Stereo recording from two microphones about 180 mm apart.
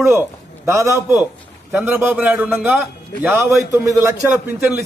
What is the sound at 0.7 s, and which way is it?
A man's voice, 15° right (ahead or behind).